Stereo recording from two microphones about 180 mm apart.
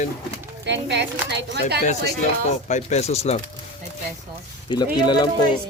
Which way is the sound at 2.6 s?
40° left (ahead or behind).